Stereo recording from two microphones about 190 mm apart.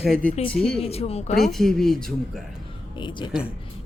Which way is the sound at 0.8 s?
30° left (ahead or behind).